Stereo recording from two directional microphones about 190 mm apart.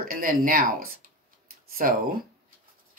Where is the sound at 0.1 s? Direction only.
50° right (ahead or behind).